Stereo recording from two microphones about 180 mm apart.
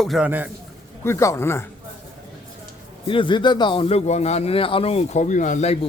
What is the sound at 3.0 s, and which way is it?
A man's voice, 30° left (ahead or behind).